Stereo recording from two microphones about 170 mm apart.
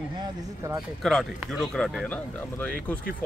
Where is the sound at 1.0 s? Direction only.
Centre (ahead or behind).